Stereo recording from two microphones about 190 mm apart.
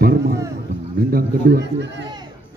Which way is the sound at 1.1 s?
60° right (ahead or behind).